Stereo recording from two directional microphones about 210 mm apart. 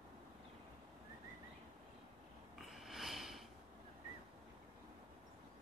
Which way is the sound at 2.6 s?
Centre (ahead or behind).